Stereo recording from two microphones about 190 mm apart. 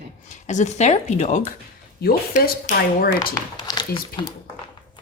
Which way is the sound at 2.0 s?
55° left (ahead or behind).